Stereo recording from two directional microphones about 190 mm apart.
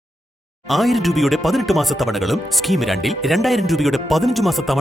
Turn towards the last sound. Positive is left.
turn(degrees=0)  # may be behind; listen again after turning